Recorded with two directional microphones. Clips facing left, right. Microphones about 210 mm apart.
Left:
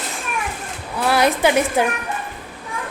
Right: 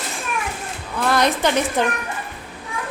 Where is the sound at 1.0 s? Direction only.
5° left (ahead or behind).